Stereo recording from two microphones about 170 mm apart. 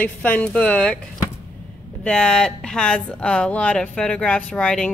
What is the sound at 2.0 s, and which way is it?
A woman's voice, 5° left (ahead or behind).